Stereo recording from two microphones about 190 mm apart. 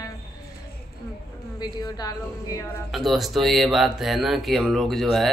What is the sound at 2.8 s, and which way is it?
Speech, centre (ahead or behind).